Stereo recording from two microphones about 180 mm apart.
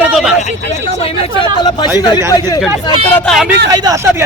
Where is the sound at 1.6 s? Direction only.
25° left (ahead or behind).